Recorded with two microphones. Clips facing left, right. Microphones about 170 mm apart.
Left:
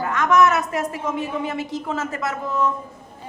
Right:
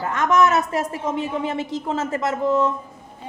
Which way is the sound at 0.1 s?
25° right (ahead or behind).